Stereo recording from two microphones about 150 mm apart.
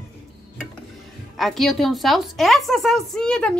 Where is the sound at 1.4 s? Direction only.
Centre (ahead or behind).